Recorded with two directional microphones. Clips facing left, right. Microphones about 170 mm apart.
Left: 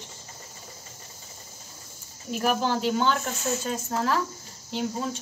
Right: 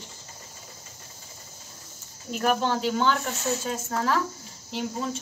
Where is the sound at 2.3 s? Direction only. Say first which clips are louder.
Even; 5° left (ahead or behind).